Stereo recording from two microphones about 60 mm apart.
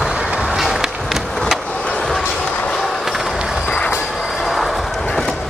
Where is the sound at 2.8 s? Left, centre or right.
Centre.